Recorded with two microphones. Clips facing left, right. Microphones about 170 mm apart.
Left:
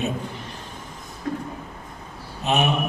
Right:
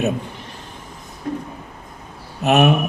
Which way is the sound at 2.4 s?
65° right (ahead or behind).